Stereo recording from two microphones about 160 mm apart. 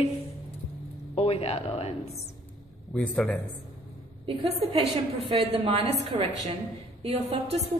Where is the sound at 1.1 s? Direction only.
40° left (ahead or behind).